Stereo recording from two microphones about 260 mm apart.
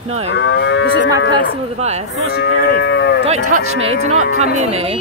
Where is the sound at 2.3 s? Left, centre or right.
Left.